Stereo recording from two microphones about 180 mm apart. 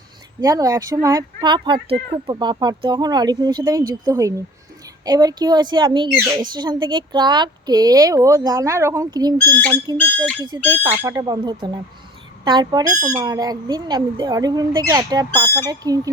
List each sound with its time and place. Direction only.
0.4 s speech: 20° right (ahead or behind)
9.5 s a sound: 10° left (ahead or behind)
10.5 s speech: 20° right (ahead or behind)